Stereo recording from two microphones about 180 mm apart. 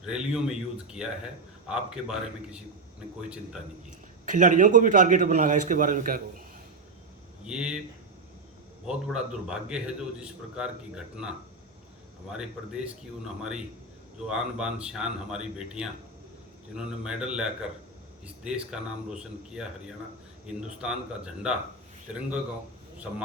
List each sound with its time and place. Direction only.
0.0 s a man's voice: 5° right (ahead or behind)
4.3 s a man's voice: 45° right (ahead or behind)
7.4 s a man's voice: 5° right (ahead or behind)
8.9 s a man's voice: 5° right (ahead or behind)